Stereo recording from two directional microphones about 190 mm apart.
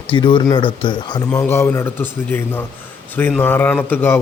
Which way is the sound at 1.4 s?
15° left (ahead or behind).